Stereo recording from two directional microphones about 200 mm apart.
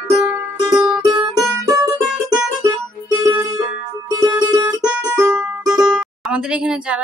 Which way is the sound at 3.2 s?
15° right (ahead or behind).